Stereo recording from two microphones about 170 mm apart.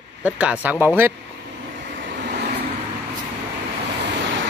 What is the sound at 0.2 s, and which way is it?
Speech, 5° right (ahead or behind).